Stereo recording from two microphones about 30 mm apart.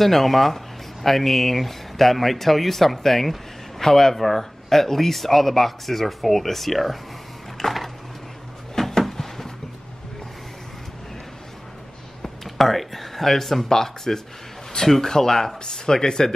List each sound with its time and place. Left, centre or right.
0.0 s speech: centre
7.6 s a sound: centre
12.4 s speech: centre; by 16.3 s left